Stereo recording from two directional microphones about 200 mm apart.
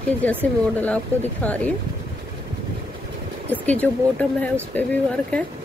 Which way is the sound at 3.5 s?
5° left (ahead or behind).